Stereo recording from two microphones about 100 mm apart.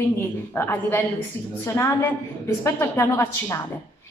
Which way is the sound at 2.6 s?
25° left (ahead or behind).